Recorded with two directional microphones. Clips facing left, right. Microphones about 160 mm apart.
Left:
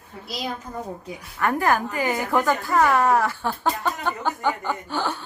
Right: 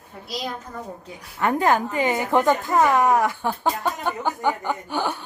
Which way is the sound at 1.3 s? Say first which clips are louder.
Right 2 dB; 20° right (ahead or behind).